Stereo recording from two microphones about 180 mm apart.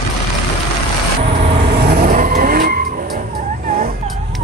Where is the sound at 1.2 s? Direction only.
35° right (ahead or behind).